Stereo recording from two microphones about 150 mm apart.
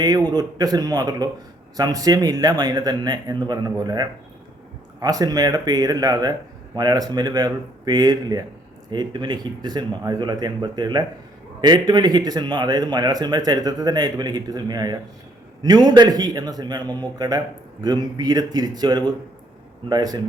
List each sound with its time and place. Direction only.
0.3 s speech: 25° right (ahead or behind)